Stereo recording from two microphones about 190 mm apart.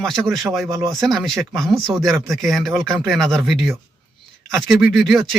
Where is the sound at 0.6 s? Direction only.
15° right (ahead or behind).